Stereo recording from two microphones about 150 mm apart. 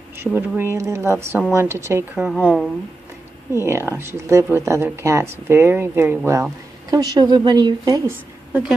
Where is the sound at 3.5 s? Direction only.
15° right (ahead or behind).